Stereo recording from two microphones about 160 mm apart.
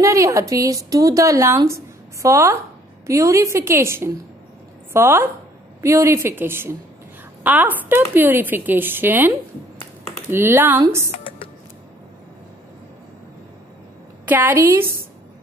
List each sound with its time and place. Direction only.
0.0 s a woman's voice: 20° right (ahead or behind)
10.3 s speech: 15° right (ahead or behind)
14.2 s speech: 10° right (ahead or behind)